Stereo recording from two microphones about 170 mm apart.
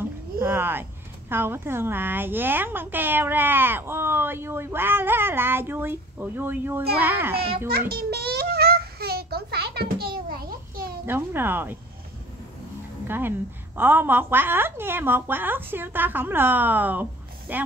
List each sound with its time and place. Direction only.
0.4 s a woman's voice: 10° right (ahead or behind)
7.5 s a sound: 65° right (ahead or behind)
11.1 s a woman's voice: 15° right (ahead or behind)
13.0 s a woman's voice: 10° right (ahead or behind)